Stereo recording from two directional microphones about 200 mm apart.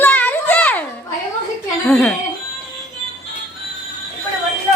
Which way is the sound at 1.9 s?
5° left (ahead or behind).